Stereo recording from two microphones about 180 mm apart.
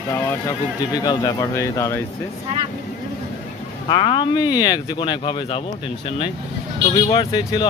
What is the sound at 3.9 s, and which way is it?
Speech, 25° left (ahead or behind).